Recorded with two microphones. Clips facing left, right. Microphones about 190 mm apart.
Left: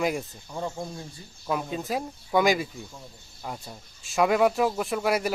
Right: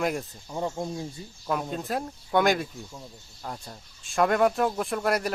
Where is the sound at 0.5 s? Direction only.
15° right (ahead or behind).